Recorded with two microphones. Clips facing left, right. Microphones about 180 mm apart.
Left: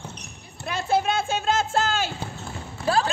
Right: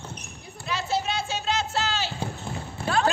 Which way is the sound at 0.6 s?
55° left (ahead or behind).